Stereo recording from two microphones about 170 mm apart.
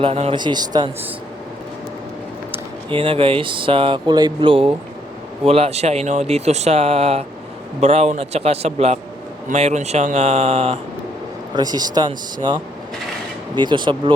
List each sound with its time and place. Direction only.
0.0 s speech: 35° right (ahead or behind)
2.9 s speech: 30° right (ahead or behind)
11.5 s speech: 25° right (ahead or behind)
13.6 s speech: 25° right (ahead or behind)